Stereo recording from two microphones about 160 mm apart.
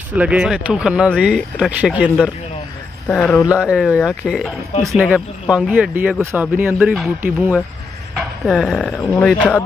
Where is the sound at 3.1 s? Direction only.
Centre (ahead or behind).